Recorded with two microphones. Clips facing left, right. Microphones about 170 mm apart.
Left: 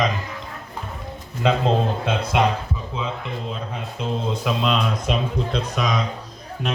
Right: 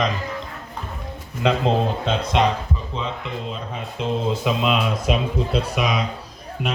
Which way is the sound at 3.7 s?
Centre (ahead or behind).